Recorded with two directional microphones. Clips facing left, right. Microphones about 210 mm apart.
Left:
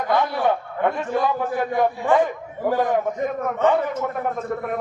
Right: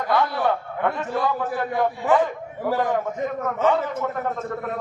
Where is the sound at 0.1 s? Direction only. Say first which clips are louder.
Left 1 dB; 20° left (ahead or behind).